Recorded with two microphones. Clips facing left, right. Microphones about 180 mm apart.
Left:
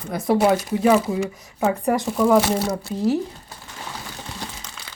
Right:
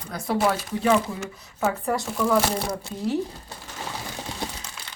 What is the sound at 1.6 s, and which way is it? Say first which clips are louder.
Speech: left 4 dB; 15° left (ahead or behind).